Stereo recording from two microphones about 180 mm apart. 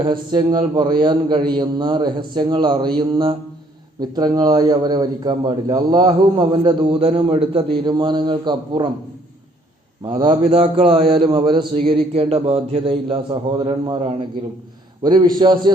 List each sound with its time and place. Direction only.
0.0 s a man's voice: 25° right (ahead or behind)
10.1 s a man's voice: 25° right (ahead or behind)
10.4 s a man's voice: 35° right (ahead or behind)